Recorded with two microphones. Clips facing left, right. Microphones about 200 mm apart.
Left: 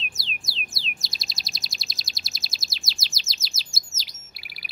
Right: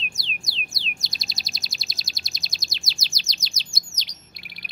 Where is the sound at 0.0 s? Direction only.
Centre (ahead or behind).